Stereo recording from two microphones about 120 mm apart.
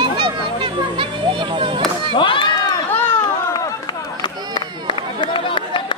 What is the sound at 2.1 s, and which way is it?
Chop, 45° left (ahead or behind).